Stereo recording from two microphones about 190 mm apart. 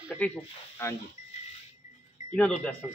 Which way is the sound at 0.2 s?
5° left (ahead or behind).